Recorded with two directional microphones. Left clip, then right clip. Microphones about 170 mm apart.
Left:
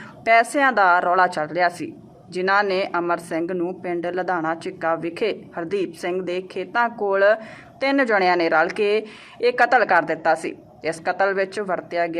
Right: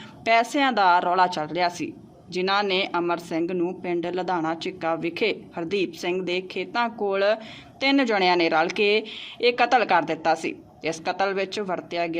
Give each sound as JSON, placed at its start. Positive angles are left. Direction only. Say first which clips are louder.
{"t": 0.3, "sound": "speech", "louder": "left 4 dB", "side_deg": -30}